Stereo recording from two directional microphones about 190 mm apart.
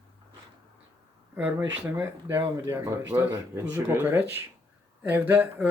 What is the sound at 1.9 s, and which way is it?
Speech, 15° right (ahead or behind).